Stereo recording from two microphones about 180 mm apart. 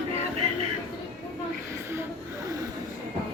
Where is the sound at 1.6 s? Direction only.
15° right (ahead or behind).